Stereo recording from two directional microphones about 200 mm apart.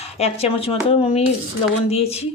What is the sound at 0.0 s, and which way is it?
Speech, 30° left (ahead or behind).